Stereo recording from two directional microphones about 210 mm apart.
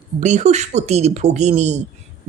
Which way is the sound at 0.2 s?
35° right (ahead or behind).